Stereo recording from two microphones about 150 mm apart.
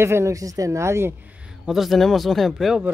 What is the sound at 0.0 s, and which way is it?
Speech, 20° right (ahead or behind).